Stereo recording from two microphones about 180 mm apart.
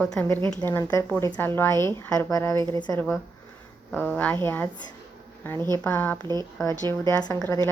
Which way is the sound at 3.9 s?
10° left (ahead or behind).